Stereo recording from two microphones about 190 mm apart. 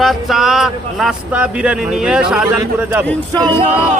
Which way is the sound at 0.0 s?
Centre (ahead or behind).